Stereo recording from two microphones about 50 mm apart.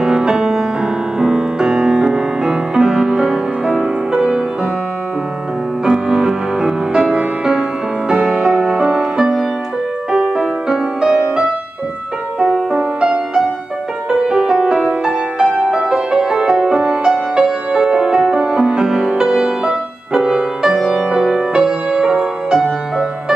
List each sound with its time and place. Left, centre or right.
0.0 s music: centre
5.9 s music: centre
8.3 s music: centre
14.2 s music: centre